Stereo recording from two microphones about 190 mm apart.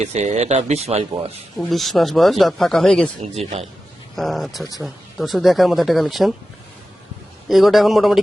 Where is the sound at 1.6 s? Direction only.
Centre (ahead or behind).